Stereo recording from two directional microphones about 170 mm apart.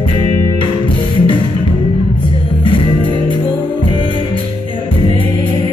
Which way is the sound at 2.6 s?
30° left (ahead or behind).